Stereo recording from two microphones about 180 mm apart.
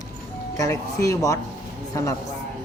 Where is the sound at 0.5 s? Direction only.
20° left (ahead or behind).